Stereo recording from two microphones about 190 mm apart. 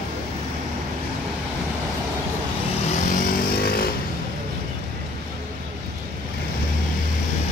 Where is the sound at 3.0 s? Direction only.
55° left (ahead or behind).